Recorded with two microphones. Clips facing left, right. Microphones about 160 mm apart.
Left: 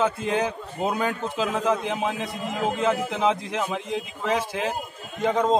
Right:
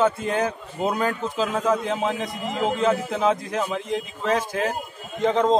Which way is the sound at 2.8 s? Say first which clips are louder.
Right 1 dB; 15° left (ahead or behind).